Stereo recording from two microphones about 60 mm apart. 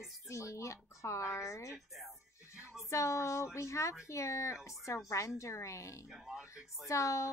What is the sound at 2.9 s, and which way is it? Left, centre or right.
Speech, left.